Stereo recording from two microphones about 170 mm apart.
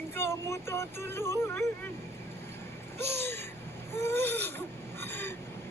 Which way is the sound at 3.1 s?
80° right.